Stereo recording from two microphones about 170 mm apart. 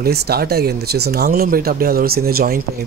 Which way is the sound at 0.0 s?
65° right (ahead or behind).